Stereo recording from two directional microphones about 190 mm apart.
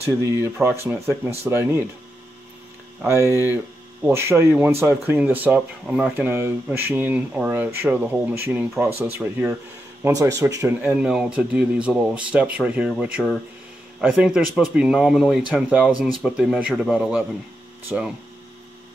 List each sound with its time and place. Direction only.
0.6 s speech: 10° right (ahead or behind)
3.0 s speech: 15° right (ahead or behind)
3.3 s speech: 15° left (ahead or behind)
4.0 s speech: 15° right (ahead or behind)
10.9 s speech: 5° right (ahead or behind)